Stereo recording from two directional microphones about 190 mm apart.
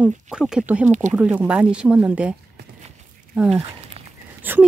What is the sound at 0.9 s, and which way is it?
Speech, 40° right (ahead or behind).